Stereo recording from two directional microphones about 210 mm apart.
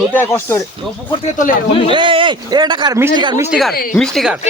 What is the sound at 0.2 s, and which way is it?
Speech, 10° left (ahead or behind).